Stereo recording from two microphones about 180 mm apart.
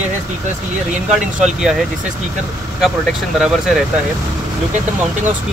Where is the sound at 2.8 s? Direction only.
Centre (ahead or behind).